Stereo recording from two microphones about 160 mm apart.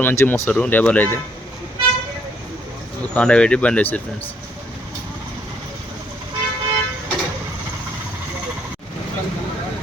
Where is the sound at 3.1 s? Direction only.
5° left (ahead or behind).